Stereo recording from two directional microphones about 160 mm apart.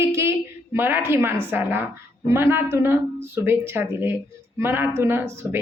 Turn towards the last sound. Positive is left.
turn(degrees=-15)  # may be behind; listen again after turning